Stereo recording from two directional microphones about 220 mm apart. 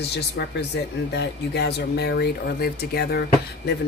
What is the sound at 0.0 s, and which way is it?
Speech, 50° left (ahead or behind).